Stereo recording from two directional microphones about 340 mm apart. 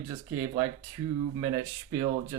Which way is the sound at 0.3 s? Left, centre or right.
Centre.